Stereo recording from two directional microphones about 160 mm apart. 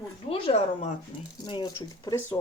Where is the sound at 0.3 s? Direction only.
40° left (ahead or behind).